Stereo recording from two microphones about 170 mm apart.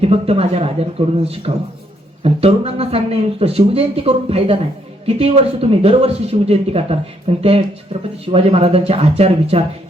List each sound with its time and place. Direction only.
0.0 s speech: 35° right (ahead or behind)